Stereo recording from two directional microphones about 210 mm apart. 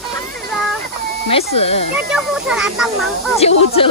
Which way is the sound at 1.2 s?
30° left (ahead or behind).